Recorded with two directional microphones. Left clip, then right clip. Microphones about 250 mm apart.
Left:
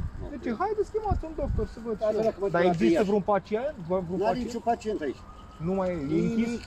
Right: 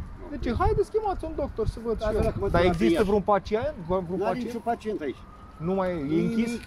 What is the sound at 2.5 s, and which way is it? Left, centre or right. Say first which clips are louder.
Speech: right 2 dB; centre.